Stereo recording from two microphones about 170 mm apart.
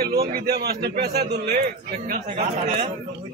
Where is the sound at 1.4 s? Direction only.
45° right (ahead or behind).